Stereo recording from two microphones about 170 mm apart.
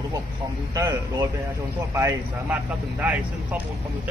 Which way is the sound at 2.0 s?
15° right (ahead or behind).